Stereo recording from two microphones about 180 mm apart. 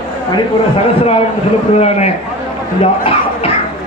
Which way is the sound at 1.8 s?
35° left (ahead or behind).